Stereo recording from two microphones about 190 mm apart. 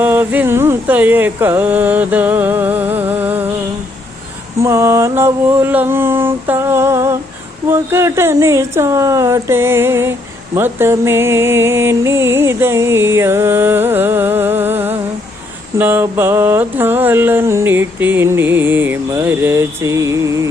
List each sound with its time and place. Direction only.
0.0 s speech: 10° right (ahead or behind)
4.6 s speech: 15° right (ahead or behind)